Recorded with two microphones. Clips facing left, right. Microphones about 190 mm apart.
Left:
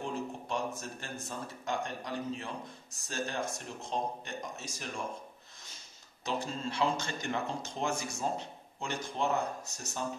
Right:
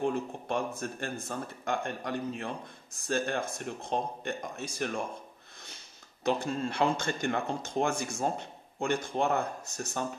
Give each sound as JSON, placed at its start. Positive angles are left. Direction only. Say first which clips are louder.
{"t": 0.0, "sound": "speech", "louder": "right 6 dB", "side_deg": -55}
{"t": 6.2, "sound": "speech", "louder": "right 6 dB", "side_deg": -55}